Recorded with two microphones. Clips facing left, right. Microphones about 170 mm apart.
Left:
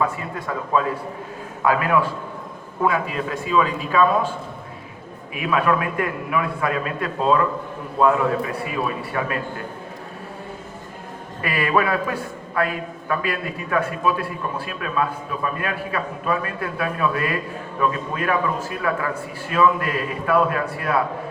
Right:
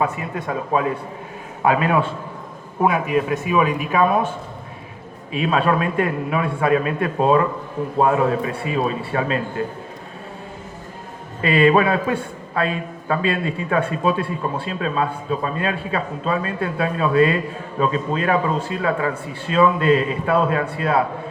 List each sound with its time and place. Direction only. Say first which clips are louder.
0.0 s a man's voice: right 1 dB; 20° right (ahead or behind)
5.3 s a man's voice: right 2 dB; 25° right (ahead or behind)
11.4 s a man's voice: right 6 dB; 25° right (ahead or behind)